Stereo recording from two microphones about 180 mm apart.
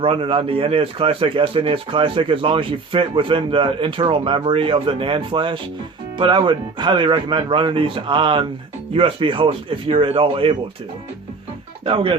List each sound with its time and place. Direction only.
0.0 s a man's voice: 30° right (ahead or behind)